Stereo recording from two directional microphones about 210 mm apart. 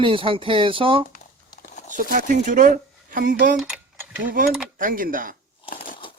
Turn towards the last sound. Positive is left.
turn(degrees=-40)  # may be behind; listen again after turning